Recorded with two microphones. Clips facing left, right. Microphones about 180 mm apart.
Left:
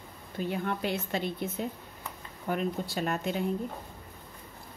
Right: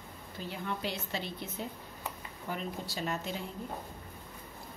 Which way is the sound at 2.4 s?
55° left (ahead or behind).